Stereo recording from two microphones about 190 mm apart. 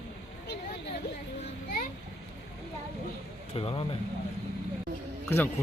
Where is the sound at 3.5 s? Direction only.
30° left (ahead or behind).